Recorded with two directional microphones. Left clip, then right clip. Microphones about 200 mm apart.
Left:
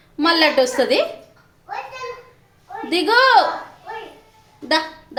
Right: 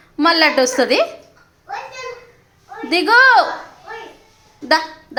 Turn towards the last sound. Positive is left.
turn(degrees=-10)  # may be behind; listen again after turning